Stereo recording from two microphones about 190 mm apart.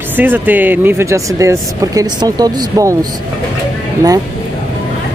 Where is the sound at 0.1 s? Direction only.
10° right (ahead or behind).